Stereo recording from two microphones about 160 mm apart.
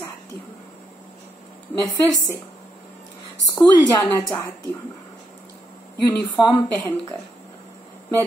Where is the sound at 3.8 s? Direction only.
20° left (ahead or behind).